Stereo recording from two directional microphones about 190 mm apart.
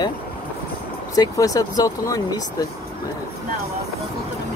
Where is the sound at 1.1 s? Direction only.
20° left (ahead or behind).